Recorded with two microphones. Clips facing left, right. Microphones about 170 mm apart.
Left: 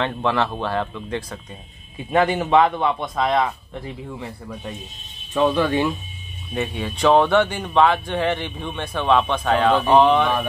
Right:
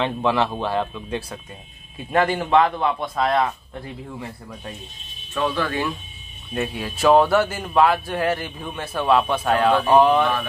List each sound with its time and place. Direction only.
0.0 s speech: 15° right (ahead or behind)
2.1 s speech: centre (ahead or behind)
5.3 s speech: 15° left (ahead or behind)
6.5 s speech: 5° right (ahead or behind)